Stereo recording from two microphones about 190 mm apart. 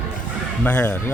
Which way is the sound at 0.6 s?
10° left (ahead or behind).